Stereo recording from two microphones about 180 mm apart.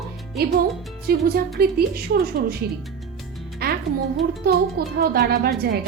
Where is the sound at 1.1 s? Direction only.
55° right (ahead or behind).